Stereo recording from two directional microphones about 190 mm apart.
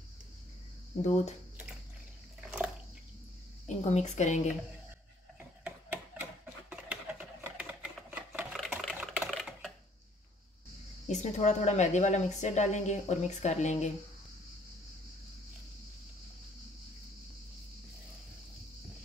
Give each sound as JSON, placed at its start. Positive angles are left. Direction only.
{"t": 1.0, "sound": "a woman's voice", "side_deg": 35}
{"t": 3.6, "sound": "a woman's voice", "side_deg": 35}
{"t": 5.6, "sound": "a sound", "side_deg": -10}
{"t": 8.6, "sound": "typing", "side_deg": 0}
{"t": 11.1, "sound": "a woman's voice", "side_deg": 35}